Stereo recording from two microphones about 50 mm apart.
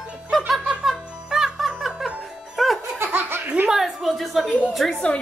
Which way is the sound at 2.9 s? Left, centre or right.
Right.